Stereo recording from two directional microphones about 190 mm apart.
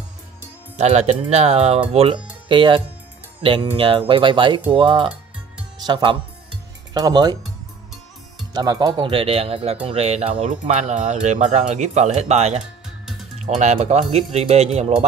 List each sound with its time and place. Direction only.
0.7 s speech: 35° right (ahead or behind)
8.5 s speech: 20° right (ahead or behind)
13.6 s speech: 35° right (ahead or behind)